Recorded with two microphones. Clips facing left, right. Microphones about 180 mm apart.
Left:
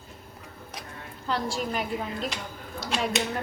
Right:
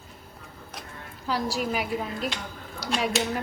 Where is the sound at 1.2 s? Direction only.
5° right (ahead or behind).